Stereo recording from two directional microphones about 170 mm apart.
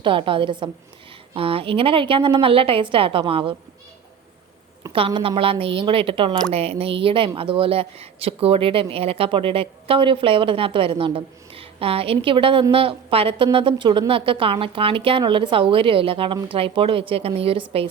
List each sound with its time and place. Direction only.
0.0 s speech: 30° right (ahead or behind)
4.9 s speech: 30° right (ahead or behind)